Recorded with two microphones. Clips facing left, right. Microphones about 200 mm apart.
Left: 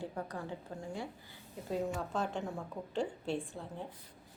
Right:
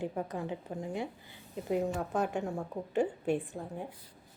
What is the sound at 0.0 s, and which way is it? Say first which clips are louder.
A woman's voice: right 5 dB; 20° right (ahead or behind).